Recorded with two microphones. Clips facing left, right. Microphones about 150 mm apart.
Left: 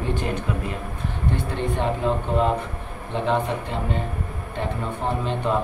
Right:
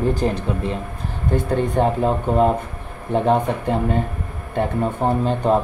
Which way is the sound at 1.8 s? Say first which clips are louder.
Right 7 dB; 45° right (ahead or behind).